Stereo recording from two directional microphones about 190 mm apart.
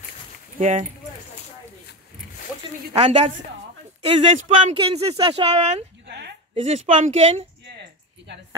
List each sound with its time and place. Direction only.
0.6 s speech: 40° right (ahead or behind)
2.9 s a woman's voice: 35° right (ahead or behind)
6.0 s a sound: 60° right (ahead or behind)
6.5 s speech: 35° right (ahead or behind)